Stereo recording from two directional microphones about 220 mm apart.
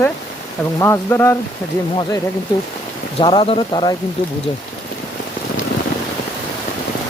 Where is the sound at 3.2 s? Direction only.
25° left (ahead or behind).